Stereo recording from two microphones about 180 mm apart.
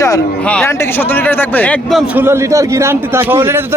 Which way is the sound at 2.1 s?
15° right (ahead or behind).